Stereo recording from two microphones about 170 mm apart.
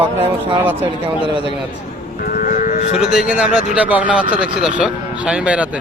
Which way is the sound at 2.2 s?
55° left (ahead or behind).